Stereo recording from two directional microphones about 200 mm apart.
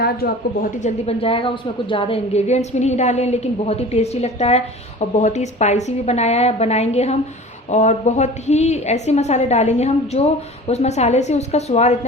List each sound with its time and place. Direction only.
0.8 s a woman's voice: 35° left (ahead or behind)